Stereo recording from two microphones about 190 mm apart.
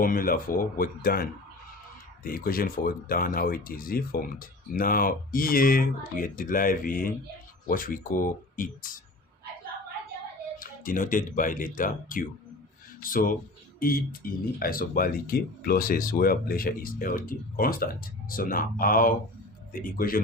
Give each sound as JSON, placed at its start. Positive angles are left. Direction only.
{"t": 0.0, "sound": "speech", "side_deg": 50}
{"t": 10.6, "sound": "speech", "side_deg": 45}